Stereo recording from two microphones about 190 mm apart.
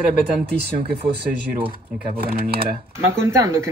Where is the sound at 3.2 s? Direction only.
15° right (ahead or behind).